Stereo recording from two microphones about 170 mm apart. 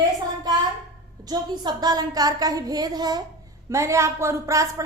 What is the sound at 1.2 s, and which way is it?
A woman's voice, 25° right (ahead or behind).